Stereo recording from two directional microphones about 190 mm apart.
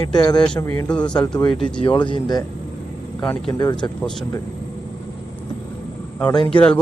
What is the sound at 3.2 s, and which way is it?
Speech, 10° left (ahead or behind).